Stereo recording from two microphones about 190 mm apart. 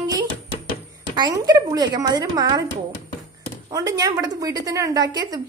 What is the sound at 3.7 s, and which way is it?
A woman's voice, 20° right (ahead or behind).